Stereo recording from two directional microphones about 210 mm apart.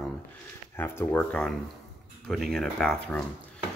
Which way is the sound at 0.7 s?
10° left (ahead or behind).